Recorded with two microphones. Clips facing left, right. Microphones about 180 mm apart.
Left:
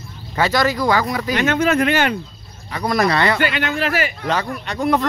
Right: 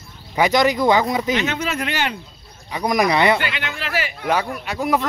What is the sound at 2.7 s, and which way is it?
Speech, 15° right (ahead or behind).